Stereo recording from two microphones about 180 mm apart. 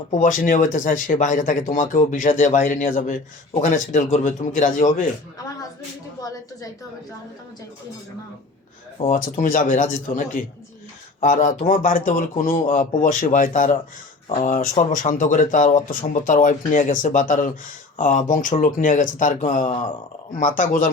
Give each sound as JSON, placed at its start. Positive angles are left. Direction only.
{"t": 0.1, "sound": "speech", "side_deg": 45}
{"t": 9.0, "sound": "speech", "side_deg": 45}